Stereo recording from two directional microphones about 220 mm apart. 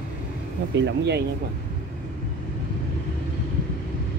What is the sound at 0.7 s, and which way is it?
Speech, 50° right (ahead or behind).